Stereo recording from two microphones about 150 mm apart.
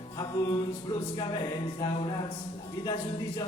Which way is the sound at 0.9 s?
30° left (ahead or behind).